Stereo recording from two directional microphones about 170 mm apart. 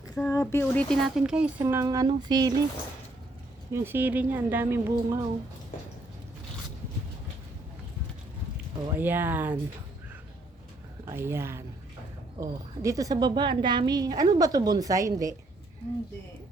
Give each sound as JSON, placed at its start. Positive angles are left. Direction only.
{"t": 0.2, "sound": "speech", "side_deg": 15}
{"t": 1.6, "sound": "a woman's voice", "side_deg": -20}
{"t": 3.7, "sound": "speech", "side_deg": -15}
{"t": 9.0, "sound": "speech", "side_deg": -10}
{"t": 11.0, "sound": "a woman's voice", "side_deg": -15}